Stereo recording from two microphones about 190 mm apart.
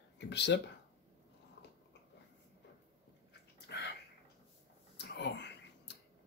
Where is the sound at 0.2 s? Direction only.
65° left (ahead or behind).